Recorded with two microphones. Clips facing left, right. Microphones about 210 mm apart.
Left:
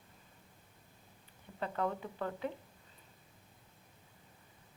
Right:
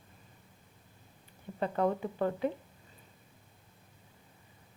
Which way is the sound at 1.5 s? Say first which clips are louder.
Right 6 dB; 25° right (ahead or behind).